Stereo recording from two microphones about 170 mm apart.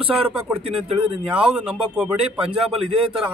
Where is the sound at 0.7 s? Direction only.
35° right (ahead or behind).